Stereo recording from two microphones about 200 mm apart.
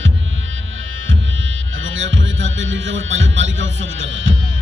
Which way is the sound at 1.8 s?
75° right (ahead or behind).